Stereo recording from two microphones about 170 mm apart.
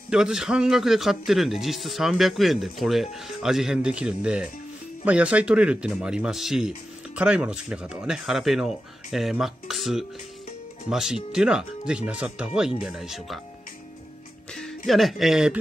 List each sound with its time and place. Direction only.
0.1 s speech: 5° right (ahead or behind)
14.9 s speech: centre (ahead or behind)